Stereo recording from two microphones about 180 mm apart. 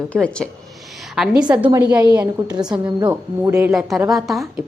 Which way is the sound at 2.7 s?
25° right (ahead or behind).